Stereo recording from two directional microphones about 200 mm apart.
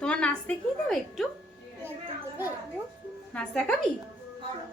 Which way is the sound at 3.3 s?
5° left (ahead or behind).